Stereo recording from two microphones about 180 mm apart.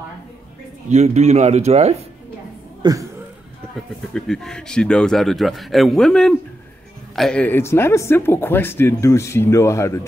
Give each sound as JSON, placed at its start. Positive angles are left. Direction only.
{"t": 0.8, "sound": "speech", "side_deg": -40}
{"t": 2.8, "sound": "speech", "side_deg": -20}
{"t": 4.1, "sound": "a man's voice", "side_deg": 5}